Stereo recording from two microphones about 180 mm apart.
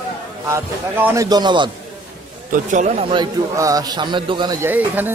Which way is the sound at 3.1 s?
20° right (ahead or behind).